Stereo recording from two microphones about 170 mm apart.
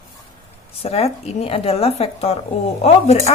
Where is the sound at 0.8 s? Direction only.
35° left (ahead or behind).